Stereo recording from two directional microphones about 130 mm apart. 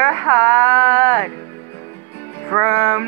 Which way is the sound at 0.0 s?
15° left (ahead or behind).